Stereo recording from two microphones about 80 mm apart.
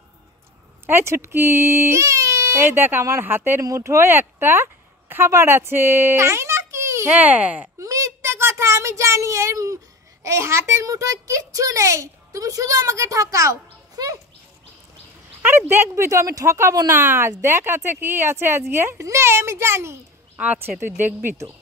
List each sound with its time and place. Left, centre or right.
0.8 s a child's voice: right
7.1 s speech: right
7.8 s a sound: right
10.2 s a child's voice: right
15.4 s a child's voice: right